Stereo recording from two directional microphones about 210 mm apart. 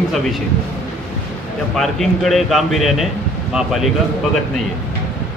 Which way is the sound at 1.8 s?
Centre (ahead or behind).